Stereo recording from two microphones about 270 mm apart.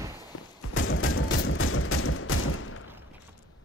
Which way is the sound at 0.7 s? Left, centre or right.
Left.